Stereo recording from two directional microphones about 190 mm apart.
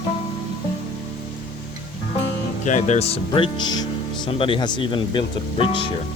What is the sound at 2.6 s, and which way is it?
Speech, 40° left (ahead or behind).